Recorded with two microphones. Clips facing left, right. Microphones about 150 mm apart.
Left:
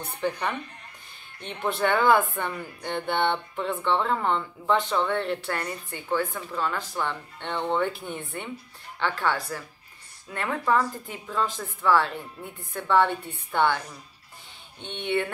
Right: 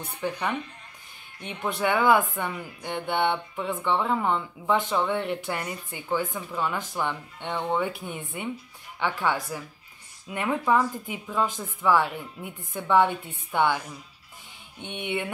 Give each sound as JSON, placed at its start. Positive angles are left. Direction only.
{"t": 1.4, "sound": "speech", "side_deg": -10}